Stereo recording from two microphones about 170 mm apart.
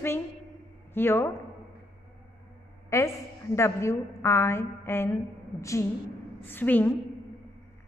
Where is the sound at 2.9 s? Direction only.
15° left (ahead or behind).